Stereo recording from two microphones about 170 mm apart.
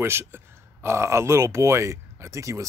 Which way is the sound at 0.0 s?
15° right (ahead or behind).